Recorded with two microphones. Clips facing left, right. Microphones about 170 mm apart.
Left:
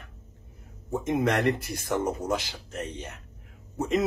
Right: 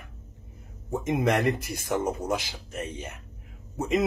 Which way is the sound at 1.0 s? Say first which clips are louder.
Even; 10° right (ahead or behind).